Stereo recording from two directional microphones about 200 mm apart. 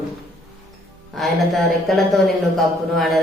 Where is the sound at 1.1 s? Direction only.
Centre (ahead or behind).